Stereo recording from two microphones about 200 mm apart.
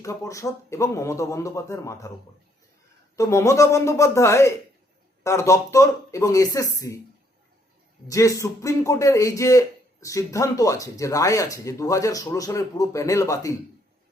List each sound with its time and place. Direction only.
0.0 s a man's voice: 15° left (ahead or behind)
3.2 s a man's voice: 15° left (ahead or behind)
8.0 s a man's voice: 15° left (ahead or behind)